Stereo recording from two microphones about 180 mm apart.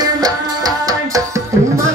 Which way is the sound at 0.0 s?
20° right (ahead or behind).